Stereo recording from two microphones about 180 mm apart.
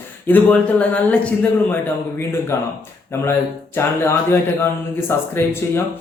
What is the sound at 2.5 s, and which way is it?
Speech, 15° left (ahead or behind).